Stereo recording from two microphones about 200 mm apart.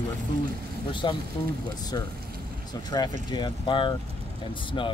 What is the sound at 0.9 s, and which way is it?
Speech, 25° left (ahead or behind).